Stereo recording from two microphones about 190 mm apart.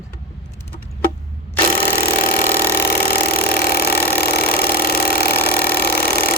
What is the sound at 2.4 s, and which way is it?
Engine, 10° left (ahead or behind).